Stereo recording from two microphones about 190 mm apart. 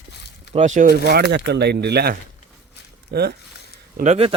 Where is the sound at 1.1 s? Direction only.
55° right (ahead or behind).